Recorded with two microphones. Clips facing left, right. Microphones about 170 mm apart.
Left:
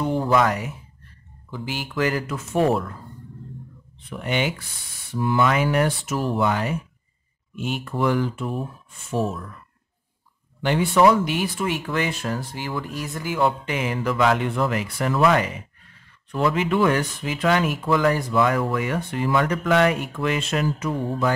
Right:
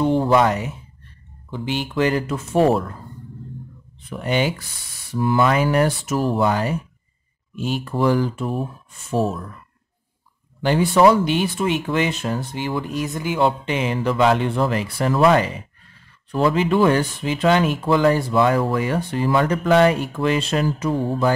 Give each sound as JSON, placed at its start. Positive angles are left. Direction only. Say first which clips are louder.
{"t": 0.0, "sound": "speech", "louder": "right 4 dB", "side_deg": -25}
{"t": 4.1, "sound": "speech", "louder": "right 3 dB", "side_deg": -35}
{"t": 10.6, "sound": "speech", "louder": "right 3 dB", "side_deg": -35}